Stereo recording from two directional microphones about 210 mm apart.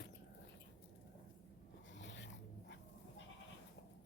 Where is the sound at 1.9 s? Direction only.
60° left (ahead or behind).